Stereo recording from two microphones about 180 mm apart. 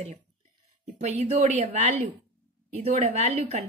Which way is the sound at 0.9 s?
35° right (ahead or behind).